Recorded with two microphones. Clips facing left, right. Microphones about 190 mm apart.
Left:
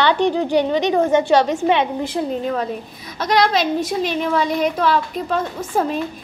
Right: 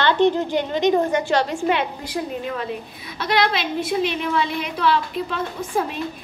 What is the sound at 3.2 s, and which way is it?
A woman's voice, 45° left (ahead or behind).